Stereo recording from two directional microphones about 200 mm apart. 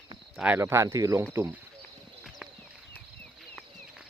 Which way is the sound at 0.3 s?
10° right (ahead or behind).